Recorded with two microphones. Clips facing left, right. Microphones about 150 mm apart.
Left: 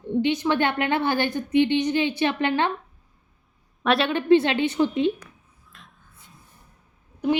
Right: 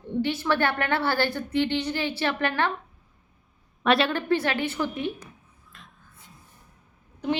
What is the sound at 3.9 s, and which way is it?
Speech, centre (ahead or behind).